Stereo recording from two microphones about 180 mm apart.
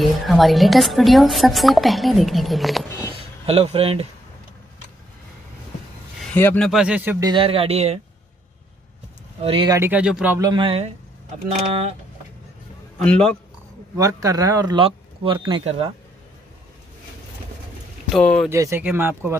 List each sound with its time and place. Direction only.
0.0 s a woman's voice: centre (ahead or behind)
3.4 s speech: 35° right (ahead or behind)
6.3 s speech: 10° left (ahead or behind)
6.7 s speech: 5° right (ahead or behind)
7.2 s speech: 30° right (ahead or behind)
9.4 s speech: 30° right (ahead or behind)
9.7 s speech: 10° right (ahead or behind)
10.4 s speech: 25° right (ahead or behind)
13.0 s speech: 5° left (ahead or behind)
13.9 s speech: 20° right (ahead or behind)
18.1 s a woman's voice: 5° left (ahead or behind)
18.5 s speech: 15° right (ahead or behind)